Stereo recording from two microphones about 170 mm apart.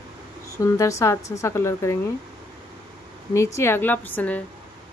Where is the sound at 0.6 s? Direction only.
20° left (ahead or behind).